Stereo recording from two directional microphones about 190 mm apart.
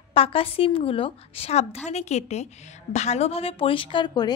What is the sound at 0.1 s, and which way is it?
A woman's voice, 30° left (ahead or behind).